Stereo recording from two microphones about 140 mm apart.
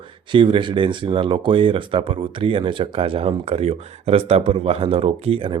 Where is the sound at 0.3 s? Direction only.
35° right (ahead or behind).